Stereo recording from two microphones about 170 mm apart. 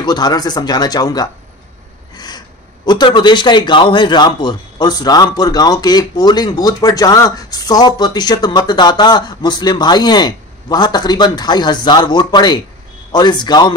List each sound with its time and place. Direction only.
0.0 s speech: 25° left (ahead or behind)